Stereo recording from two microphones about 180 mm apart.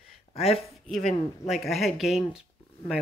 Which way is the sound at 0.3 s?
35° left (ahead or behind).